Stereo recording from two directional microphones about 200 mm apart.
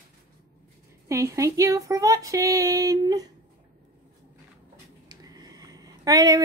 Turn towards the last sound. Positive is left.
turn(degrees=-20)  # may be behind; listen again after turning